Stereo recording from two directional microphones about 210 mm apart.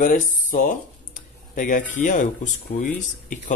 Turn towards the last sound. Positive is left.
turn(degrees=35)  # may be behind; listen again after turning